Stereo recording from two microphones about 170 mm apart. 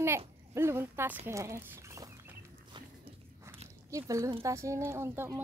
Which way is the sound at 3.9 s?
20° right (ahead or behind).